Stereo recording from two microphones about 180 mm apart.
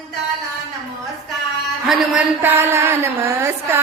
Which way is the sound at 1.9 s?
10° right (ahead or behind).